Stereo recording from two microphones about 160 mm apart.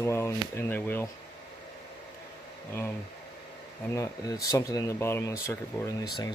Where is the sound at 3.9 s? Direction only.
20° left (ahead or behind).